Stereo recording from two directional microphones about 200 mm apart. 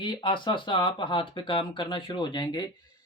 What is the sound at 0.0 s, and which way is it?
Speech, 25° left (ahead or behind).